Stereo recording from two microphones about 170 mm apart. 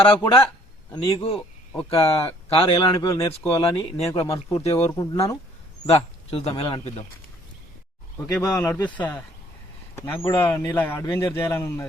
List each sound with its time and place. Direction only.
0.0 s a man's voice: 30° left (ahead or behind)
2.7 s speech: 20° left (ahead or behind)
3.6 s a man's voice: 30° left (ahead or behind)
4.7 s speech: 20° left (ahead or behind)
5.8 s a man's voice: 35° left (ahead or behind)
8.3 s a man's voice: 5° left (ahead or behind)